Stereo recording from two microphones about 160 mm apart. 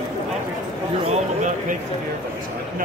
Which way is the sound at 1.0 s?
50° right (ahead or behind).